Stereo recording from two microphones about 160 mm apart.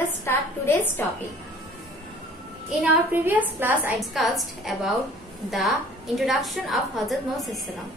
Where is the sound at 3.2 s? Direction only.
10° right (ahead or behind).